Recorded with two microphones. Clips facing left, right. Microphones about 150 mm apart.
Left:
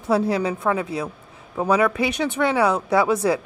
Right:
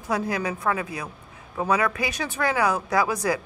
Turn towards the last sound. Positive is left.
turn(degrees=25)  # may be behind; listen again after turning